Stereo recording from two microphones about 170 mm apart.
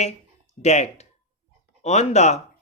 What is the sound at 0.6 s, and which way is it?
Speech, 40° left (ahead or behind).